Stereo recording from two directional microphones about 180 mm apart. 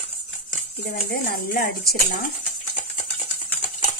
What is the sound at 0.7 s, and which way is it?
A woman's voice, 60° left (ahead or behind).